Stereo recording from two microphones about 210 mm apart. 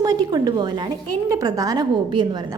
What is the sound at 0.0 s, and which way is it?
A woman's voice, 15° right (ahead or behind).